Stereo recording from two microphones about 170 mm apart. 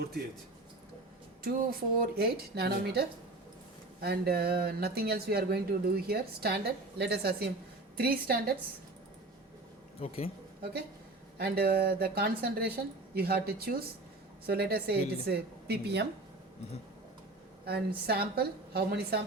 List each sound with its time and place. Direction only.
1.5 s a woman's voice: 60° right (ahead or behind)
10.0 s speech: 35° left (ahead or behind)
11.3 s a woman's voice: 65° right (ahead or behind)
17.7 s speech: 65° right (ahead or behind)